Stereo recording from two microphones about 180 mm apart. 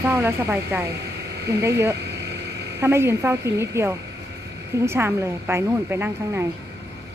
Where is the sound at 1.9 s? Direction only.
70° right (ahead or behind).